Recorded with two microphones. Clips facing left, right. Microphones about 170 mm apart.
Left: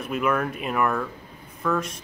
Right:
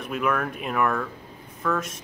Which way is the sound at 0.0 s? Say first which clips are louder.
Left 1 dB; centre (ahead or behind).